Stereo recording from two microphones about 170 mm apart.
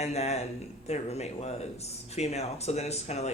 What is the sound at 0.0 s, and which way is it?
Speech, 40° left (ahead or behind).